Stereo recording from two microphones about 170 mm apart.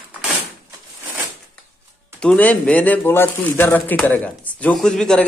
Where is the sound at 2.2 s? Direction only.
5° left (ahead or behind).